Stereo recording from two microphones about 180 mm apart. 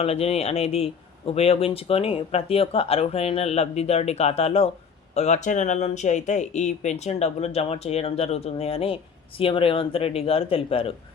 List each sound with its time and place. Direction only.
0.0 s speech: 35° left (ahead or behind)